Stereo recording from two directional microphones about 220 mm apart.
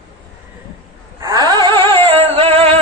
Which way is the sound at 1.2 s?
20° right (ahead or behind).